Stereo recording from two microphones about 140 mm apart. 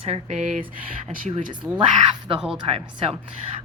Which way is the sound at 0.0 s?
50° right (ahead or behind).